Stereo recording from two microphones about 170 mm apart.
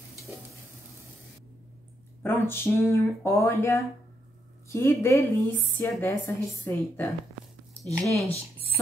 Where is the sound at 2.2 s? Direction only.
15° left (ahead or behind).